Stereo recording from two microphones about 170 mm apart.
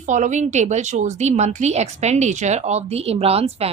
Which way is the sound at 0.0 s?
45° right (ahead or behind).